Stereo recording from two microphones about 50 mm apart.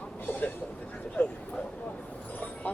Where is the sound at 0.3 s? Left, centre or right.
Left.